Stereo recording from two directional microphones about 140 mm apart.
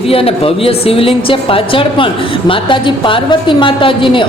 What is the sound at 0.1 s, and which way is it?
Speech, 45° left (ahead or behind).